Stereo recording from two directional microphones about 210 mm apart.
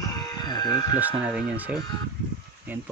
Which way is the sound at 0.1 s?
20° left (ahead or behind).